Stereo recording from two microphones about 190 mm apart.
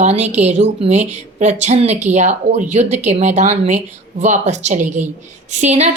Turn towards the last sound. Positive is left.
turn(degrees=-35)  # may be behind; listen again after turning